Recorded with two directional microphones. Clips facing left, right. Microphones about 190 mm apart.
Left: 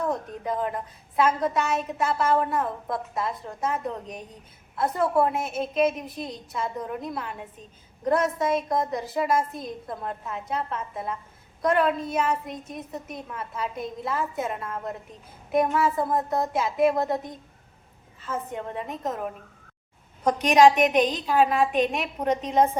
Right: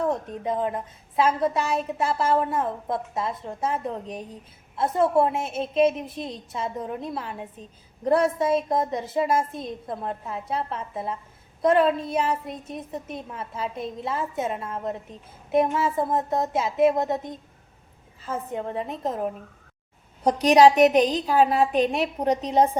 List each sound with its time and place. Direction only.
0.0 s a woman's voice: 25° right (ahead or behind)
18.2 s a woman's voice: 35° right (ahead or behind)